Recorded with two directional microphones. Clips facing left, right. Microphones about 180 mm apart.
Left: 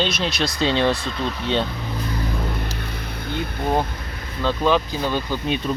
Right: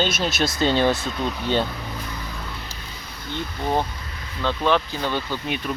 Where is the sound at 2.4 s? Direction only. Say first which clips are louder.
Left 8 dB; 55° left (ahead or behind).